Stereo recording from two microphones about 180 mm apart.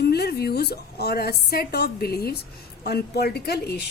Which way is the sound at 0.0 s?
65° left (ahead or behind).